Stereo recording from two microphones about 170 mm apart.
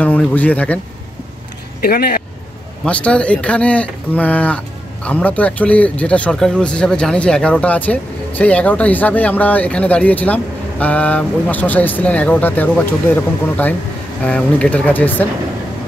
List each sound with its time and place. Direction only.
0.0 s speech: 10° left (ahead or behind)
1.8 s speech: 65° left (ahead or behind)
2.8 s speech: 5° left (ahead or behind)